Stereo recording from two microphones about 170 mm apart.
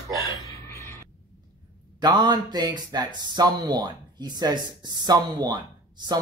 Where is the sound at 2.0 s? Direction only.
25° right (ahead or behind).